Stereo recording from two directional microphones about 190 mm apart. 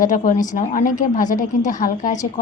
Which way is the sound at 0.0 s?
45° left (ahead or behind).